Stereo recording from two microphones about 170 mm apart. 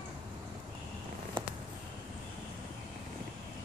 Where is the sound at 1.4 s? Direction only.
25° right (ahead or behind).